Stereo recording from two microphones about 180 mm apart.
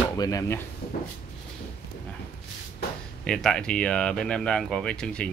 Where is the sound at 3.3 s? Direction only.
5° left (ahead or behind).